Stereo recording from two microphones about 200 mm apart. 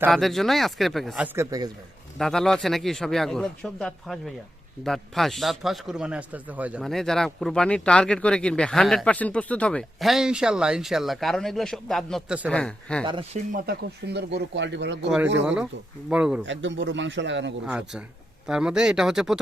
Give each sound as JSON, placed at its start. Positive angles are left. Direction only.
{"t": 0.1, "sound": "speech", "side_deg": 0}
{"t": 2.1, "sound": "speech", "side_deg": 0}
{"t": 13.1, "sound": "speech", "side_deg": -25}
{"t": 13.5, "sound": "speech", "side_deg": -50}
{"t": 16.0, "sound": "speech", "side_deg": -5}
{"t": 16.5, "sound": "speech", "side_deg": -65}
{"t": 17.7, "sound": "speech", "side_deg": -5}